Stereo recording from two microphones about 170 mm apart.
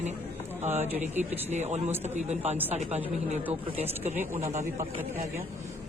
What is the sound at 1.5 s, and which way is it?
A man's voice, 40° right (ahead or behind).